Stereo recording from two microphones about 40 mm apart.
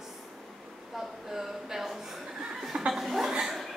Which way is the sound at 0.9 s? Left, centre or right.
Centre.